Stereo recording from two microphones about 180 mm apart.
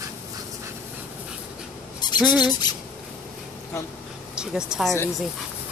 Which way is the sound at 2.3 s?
25° left (ahead or behind).